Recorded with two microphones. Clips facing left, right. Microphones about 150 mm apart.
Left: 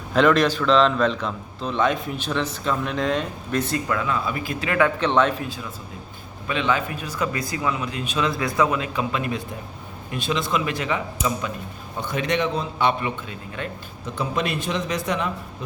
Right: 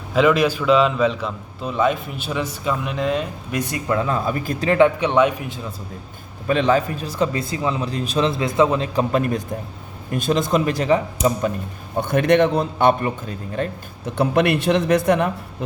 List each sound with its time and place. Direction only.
0.1 s a man's voice: 5° right (ahead or behind)
3.8 s a man's voice: 30° right (ahead or behind)
4.8 s a man's voice: 10° right (ahead or behind)
6.5 s a man's voice: 40° right (ahead or behind)
11.9 s a man's voice: 55° right (ahead or behind)
14.0 s a man's voice: 60° right (ahead or behind)